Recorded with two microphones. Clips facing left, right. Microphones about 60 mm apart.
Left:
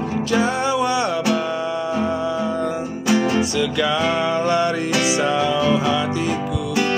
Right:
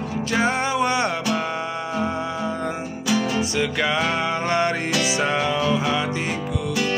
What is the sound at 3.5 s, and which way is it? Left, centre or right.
Music, right.